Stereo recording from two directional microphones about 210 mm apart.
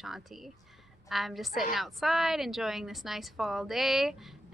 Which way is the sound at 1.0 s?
Centre (ahead or behind).